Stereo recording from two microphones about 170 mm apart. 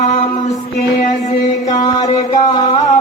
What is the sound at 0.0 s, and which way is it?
Music, 45° left (ahead or behind).